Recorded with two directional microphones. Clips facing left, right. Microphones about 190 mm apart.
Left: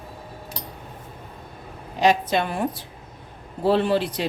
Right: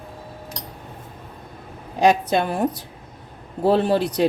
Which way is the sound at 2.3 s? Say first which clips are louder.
Right 3 dB; 40° right (ahead or behind).